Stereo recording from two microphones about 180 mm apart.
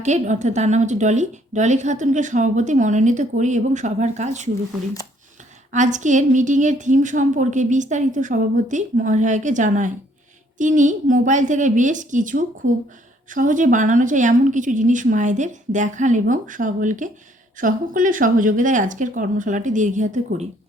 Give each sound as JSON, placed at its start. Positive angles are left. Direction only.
{"t": 0.0, "sound": "a woman's voice", "side_deg": -40}
{"t": 5.7, "sound": "speech", "side_deg": -45}